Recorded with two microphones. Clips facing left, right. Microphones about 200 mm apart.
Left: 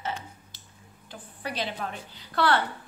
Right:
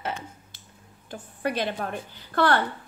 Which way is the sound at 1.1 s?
50° right (ahead or behind).